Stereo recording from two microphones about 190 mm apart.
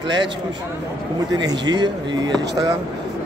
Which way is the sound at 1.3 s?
20° right (ahead or behind).